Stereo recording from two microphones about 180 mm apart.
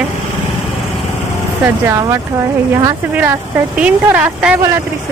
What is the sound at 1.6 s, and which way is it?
Speech, 15° right (ahead or behind).